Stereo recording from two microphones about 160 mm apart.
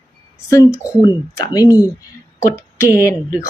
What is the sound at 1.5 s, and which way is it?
A woman's voice, 20° left (ahead or behind).